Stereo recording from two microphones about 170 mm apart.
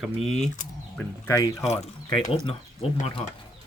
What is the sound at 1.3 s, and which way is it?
Speech, 20° left (ahead or behind).